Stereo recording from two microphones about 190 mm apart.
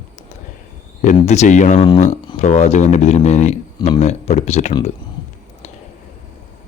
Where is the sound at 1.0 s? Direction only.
40° left (ahead or behind).